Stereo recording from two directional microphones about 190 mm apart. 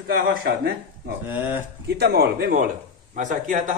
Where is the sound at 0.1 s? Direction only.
55° right (ahead or behind).